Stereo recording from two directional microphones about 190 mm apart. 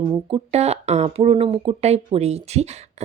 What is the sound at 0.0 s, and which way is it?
Speech, 25° right (ahead or behind).